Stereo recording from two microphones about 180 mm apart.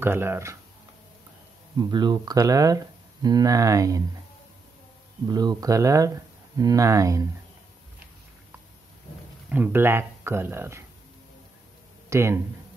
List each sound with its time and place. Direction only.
0.0 s speech: 10° right (ahead or behind)
1.8 s speech: 25° right (ahead or behind)
5.3 s speech: 20° right (ahead or behind)
9.5 s speech: 10° right (ahead or behind)
12.1 s speech: 15° right (ahead or behind)